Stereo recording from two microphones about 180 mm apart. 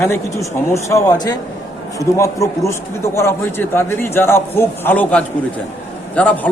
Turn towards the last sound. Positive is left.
turn(degrees=10)  # may be behind; listen again after turning